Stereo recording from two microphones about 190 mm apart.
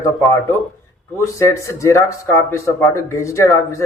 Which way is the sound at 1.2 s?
15° left (ahead or behind).